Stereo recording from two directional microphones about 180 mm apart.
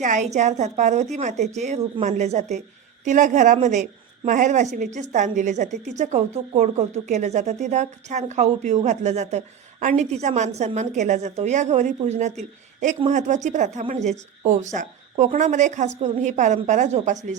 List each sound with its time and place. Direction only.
0.0 s a woman's voice: 40° right (ahead or behind)